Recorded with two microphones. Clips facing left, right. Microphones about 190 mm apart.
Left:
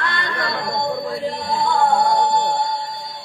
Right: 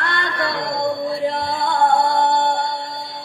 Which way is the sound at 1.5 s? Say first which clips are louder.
Left 2 dB; 60° right (ahead or behind).